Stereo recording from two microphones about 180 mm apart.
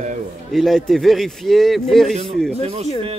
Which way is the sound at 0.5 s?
Centre (ahead or behind).